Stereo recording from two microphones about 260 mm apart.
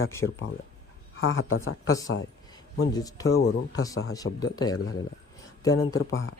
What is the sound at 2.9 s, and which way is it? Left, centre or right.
Speech, centre.